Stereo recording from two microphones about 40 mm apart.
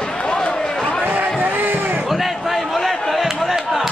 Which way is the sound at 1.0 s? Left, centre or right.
Right.